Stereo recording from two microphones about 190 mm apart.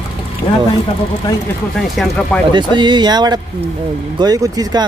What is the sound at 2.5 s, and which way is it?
Speech, 25° right (ahead or behind).